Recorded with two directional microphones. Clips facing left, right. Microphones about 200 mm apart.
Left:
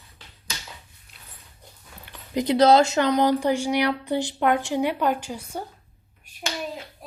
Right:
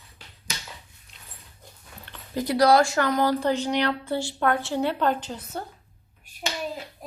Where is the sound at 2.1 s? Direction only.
20° left (ahead or behind).